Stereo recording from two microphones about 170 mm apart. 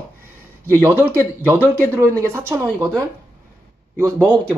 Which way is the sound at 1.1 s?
10° left (ahead or behind).